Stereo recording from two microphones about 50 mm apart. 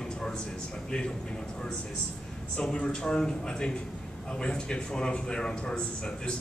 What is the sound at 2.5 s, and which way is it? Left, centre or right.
A man's voice, centre.